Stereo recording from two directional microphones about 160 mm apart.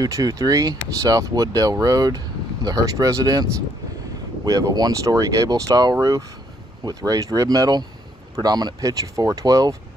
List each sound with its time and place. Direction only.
0.0 s speech: 20° right (ahead or behind)
4.5 s speech: 20° right (ahead or behind)